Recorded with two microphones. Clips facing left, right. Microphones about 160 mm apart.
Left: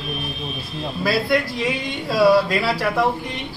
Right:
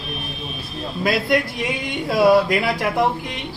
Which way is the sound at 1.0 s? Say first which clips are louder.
Right 1 dB; 20° right (ahead or behind).